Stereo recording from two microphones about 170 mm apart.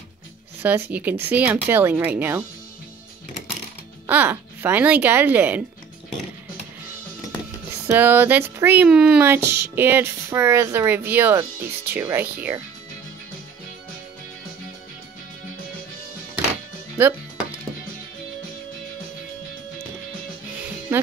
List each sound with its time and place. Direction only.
0.6 s speech: 10° right (ahead or behind)
4.1 s speech: 10° right (ahead or behind)
7.9 s speech: 10° right (ahead or behind)
16.9 s music: 15° right (ahead or behind)